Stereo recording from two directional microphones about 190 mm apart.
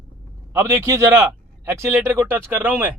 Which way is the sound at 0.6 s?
15° right (ahead or behind).